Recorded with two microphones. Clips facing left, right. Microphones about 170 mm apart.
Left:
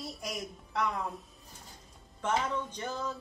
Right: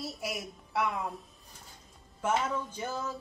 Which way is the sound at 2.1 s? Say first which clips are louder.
Right 1 dB; 5° right (ahead or behind).